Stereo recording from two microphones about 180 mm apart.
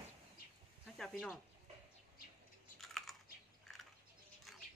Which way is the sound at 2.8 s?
Centre (ahead or behind).